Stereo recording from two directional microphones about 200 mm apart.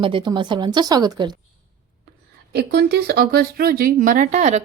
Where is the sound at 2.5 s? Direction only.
55° right (ahead or behind).